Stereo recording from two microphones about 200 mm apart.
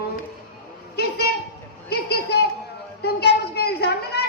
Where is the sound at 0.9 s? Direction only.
50° left (ahead or behind).